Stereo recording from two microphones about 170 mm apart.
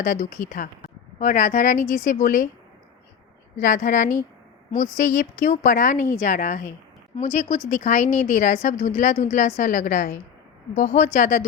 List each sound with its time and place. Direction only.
0.0 s a woman's voice: 50° left (ahead or behind)
3.6 s a woman's voice: 50° left (ahead or behind)